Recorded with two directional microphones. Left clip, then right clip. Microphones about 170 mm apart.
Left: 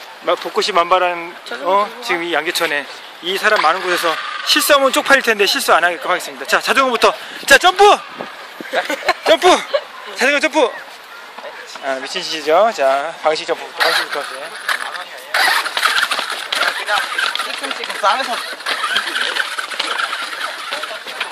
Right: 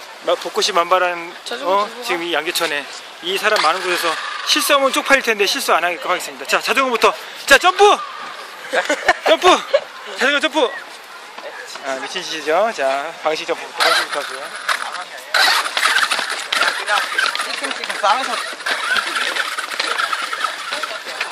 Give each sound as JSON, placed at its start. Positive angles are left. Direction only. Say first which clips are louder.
{"t": 0.2, "sound": "speech", "louder": "left 1 dB", "side_deg": 35}
{"t": 8.8, "sound": "speech", "louder": "right 4 dB", "side_deg": -25}
{"t": 9.3, "sound": "speech", "louder": "left 2 dB", "side_deg": 35}
{"t": 11.8, "sound": "speech", "louder": "left 3 dB", "side_deg": 35}
{"t": 13.7, "sound": "speech", "louder": "even", "side_deg": 0}
{"t": 15.3, "sound": "a sound", "louder": "even", "side_deg": 0}